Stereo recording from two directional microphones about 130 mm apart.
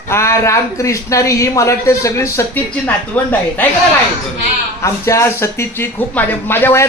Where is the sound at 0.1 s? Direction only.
20° left (ahead or behind).